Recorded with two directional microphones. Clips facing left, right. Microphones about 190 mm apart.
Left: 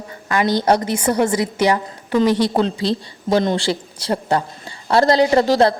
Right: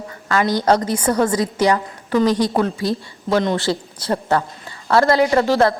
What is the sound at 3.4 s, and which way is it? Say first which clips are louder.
A woman's voice: even; 30° left (ahead or behind).